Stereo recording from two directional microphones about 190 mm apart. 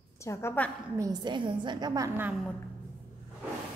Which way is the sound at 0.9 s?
20° right (ahead or behind).